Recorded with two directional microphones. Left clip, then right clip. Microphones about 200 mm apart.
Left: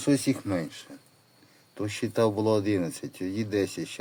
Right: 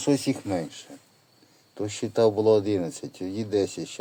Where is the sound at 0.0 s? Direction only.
10° left (ahead or behind).